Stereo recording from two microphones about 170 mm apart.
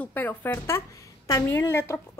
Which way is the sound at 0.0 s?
10° left (ahead or behind).